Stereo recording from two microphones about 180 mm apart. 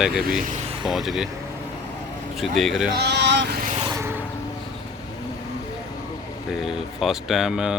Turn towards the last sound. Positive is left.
turn(degrees=-5)  # may be behind; listen again after turning